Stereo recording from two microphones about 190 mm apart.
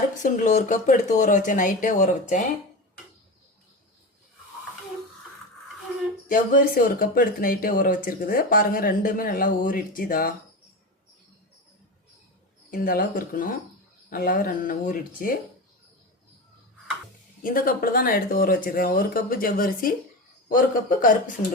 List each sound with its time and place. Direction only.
0.2 s speech: 40° left (ahead or behind)
6.2 s speech: 45° left (ahead or behind)
12.7 s speech: 50° left (ahead or behind)
17.4 s speech: 50° left (ahead or behind)